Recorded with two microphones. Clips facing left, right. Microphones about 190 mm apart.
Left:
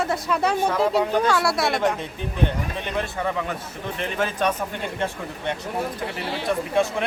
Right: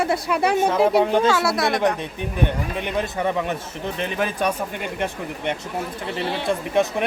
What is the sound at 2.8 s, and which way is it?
A man's voice, 20° right (ahead or behind).